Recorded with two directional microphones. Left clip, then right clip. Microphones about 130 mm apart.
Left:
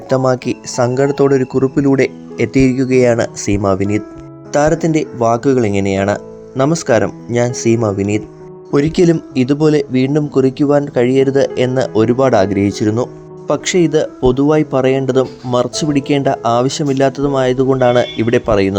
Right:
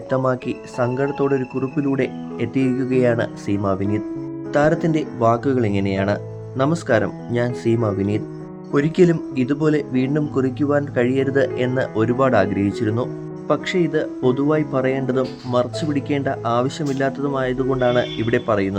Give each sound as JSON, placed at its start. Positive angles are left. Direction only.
{"t": 0.1, "sound": "a man's voice", "side_deg": 35}
{"t": 13.5, "sound": "a man's voice", "side_deg": 45}